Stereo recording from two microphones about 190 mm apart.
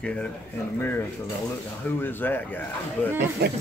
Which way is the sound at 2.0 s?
10° left (ahead or behind).